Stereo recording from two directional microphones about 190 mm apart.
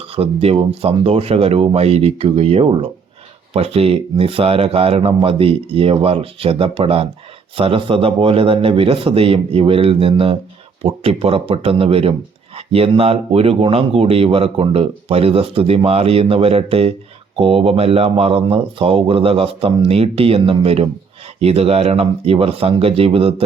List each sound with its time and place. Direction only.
0.0 s a man's voice: 30° right (ahead or behind)